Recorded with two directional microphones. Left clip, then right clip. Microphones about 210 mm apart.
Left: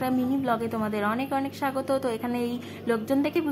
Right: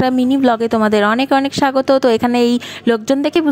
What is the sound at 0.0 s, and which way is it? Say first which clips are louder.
A woman's voice: right 13 dB; 40° right (ahead or behind).